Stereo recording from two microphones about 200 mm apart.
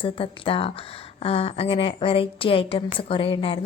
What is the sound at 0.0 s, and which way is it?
Speech, 25° left (ahead or behind).